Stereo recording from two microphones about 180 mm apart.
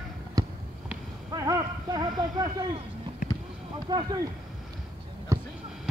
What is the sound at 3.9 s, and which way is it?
Speech, 25° right (ahead or behind).